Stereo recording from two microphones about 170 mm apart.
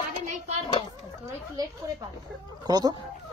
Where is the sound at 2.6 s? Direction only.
25° right (ahead or behind).